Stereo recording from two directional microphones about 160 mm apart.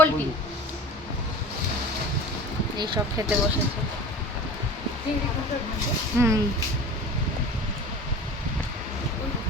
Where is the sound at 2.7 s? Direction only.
30° right (ahead or behind).